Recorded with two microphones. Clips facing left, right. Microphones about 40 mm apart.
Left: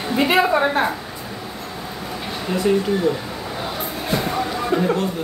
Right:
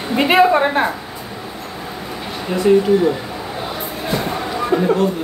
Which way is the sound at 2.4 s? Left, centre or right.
Centre.